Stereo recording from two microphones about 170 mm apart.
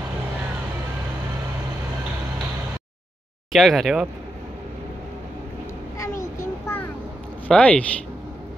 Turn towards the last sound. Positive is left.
turn(degrees=5)  # may be behind; listen again after turning